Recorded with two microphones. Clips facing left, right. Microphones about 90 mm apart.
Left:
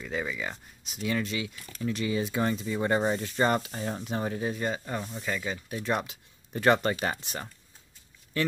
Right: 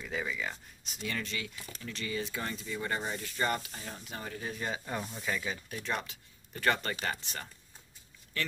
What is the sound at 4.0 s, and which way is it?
Speech, 30° left (ahead or behind).